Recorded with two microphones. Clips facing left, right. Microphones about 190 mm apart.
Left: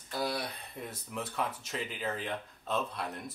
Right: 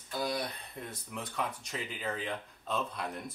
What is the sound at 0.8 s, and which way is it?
Speech, 5° left (ahead or behind).